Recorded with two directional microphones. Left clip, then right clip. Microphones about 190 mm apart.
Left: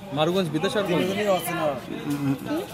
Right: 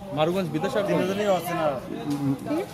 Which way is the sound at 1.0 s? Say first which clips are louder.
Even; 15° left (ahead or behind).